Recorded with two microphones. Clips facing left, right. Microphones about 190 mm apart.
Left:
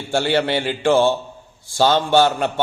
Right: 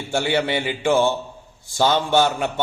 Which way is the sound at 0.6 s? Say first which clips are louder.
Left 3 dB; 15° right (ahead or behind).